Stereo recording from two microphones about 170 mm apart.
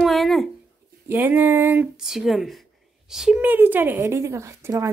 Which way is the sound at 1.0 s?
10° right (ahead or behind).